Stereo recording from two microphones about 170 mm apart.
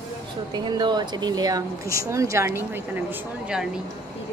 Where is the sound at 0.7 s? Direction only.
25° right (ahead or behind); by 3.6 s 5° right (ahead or behind).